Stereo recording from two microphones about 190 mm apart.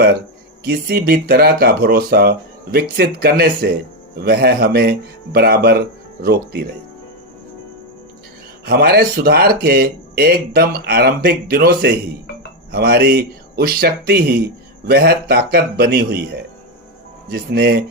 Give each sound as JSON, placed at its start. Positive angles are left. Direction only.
{"t": 0.6, "sound": "speech", "side_deg": -55}
{"t": 8.6, "sound": "speech", "side_deg": -55}
{"t": 17.5, "sound": "speech", "side_deg": -55}